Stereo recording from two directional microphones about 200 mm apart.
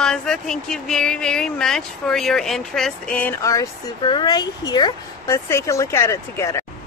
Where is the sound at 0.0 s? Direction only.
5° left (ahead or behind).